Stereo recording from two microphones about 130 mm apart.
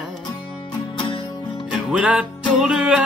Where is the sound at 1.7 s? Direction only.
5° right (ahead or behind).